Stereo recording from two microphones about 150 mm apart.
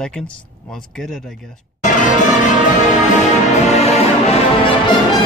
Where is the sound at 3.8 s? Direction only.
45° left (ahead or behind).